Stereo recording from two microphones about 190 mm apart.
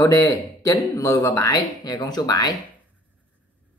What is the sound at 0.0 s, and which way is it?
Speech, 15° left (ahead or behind).